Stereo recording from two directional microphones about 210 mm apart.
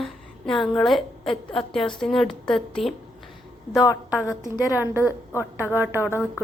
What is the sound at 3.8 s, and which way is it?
Speech, 15° left (ahead or behind).